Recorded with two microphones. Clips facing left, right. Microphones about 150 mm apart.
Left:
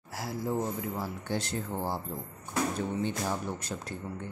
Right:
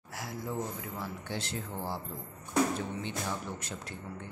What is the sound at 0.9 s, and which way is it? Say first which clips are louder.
Speech: left 4 dB; 40° left (ahead or behind).